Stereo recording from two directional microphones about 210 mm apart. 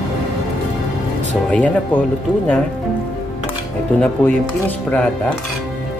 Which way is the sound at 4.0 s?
5° left (ahead or behind).